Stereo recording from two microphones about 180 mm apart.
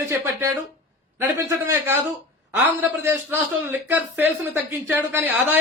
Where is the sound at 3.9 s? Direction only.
10° right (ahead or behind).